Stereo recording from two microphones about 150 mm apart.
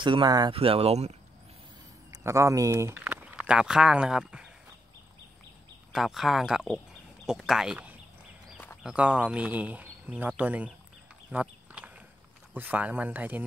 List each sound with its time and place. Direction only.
0.0 s speech: 30° right (ahead or behind)
2.0 s speech: 20° right (ahead or behind)
5.9 s speech: centre (ahead or behind)
11.3 s a sound: 10° right (ahead or behind)
12.5 s speech: 10° right (ahead or behind)